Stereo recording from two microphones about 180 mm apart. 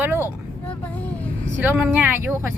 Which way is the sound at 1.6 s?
10° right (ahead or behind).